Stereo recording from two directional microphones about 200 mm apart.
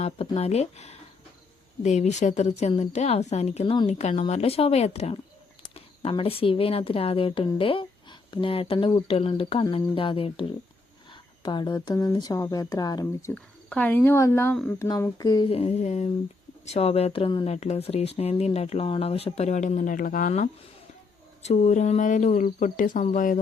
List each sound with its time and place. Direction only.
0.0 s speech: 30° left (ahead or behind)
13.3 s speech: 5° left (ahead or behind)
14.8 s speech: 20° left (ahead or behind); by 23.4 s 40° left (ahead or behind)